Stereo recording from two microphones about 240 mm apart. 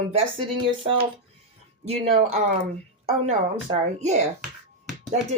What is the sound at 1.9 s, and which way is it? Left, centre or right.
Speech, right.